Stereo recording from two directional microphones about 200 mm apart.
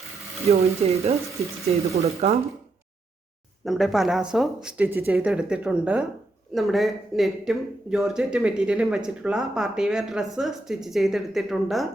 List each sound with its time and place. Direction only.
0.4 s speech: 30° right (ahead or behind)
3.7 s speech: centre (ahead or behind)